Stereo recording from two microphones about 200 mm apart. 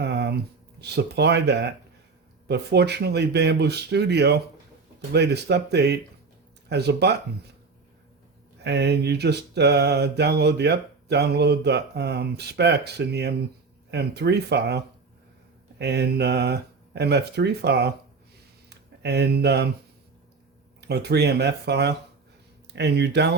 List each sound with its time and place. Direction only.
0.0 s a sound: 55° right (ahead or behind)
0.8 s mantra: 55° right (ahead or behind)
8.6 s mantra: 55° right (ahead or behind)
18.7 s speech: 55° right (ahead or behind)
20.8 s mantra: 55° right (ahead or behind)
22.6 s speech: 60° right (ahead or behind)